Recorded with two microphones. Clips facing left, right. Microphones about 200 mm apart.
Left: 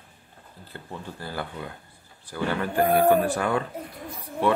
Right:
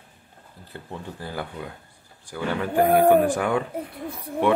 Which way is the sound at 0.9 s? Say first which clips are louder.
Right 1 dB; 15° right (ahead or behind).